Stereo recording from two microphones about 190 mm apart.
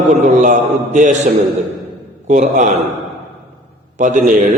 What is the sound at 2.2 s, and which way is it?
Speech, 40° right (ahead or behind).